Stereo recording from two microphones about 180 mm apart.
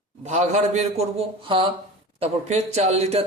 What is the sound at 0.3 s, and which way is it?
Speech, 40° right (ahead or behind).